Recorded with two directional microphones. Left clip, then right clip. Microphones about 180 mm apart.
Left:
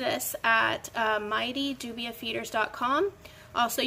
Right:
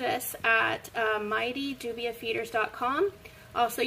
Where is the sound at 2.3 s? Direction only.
35° left (ahead or behind).